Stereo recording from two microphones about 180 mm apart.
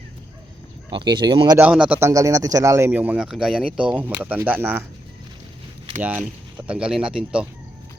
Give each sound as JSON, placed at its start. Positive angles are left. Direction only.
{"t": 0.9, "sound": "speech", "side_deg": -25}
{"t": 1.5, "sound": "a man's voice", "side_deg": -5}
{"t": 6.0, "sound": "a man's voice", "side_deg": -10}